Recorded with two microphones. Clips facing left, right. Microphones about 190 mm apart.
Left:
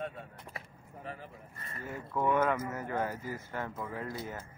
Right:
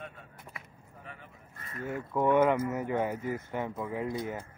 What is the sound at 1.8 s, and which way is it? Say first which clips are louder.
Speech: right 4 dB; 20° right (ahead or behind).